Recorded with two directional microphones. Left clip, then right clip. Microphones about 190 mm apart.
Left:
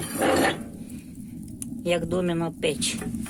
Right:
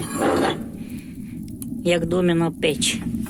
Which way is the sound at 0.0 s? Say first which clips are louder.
Right 2 dB; centre (ahead or behind).